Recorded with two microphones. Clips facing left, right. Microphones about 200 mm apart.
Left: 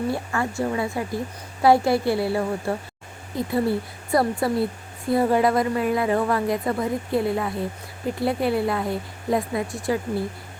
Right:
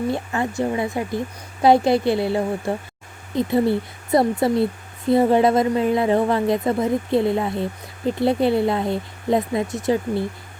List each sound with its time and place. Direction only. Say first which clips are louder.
0.1 s speech: right 2 dB; 20° right (ahead or behind)